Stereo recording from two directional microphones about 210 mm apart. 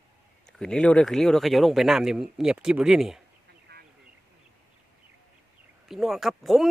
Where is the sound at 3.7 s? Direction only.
50° right (ahead or behind).